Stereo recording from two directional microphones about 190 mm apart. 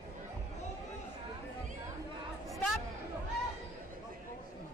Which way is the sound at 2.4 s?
Centre (ahead or behind).